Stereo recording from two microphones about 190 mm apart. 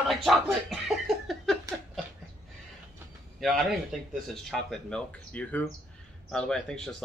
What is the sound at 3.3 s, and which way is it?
Speech, centre (ahead or behind).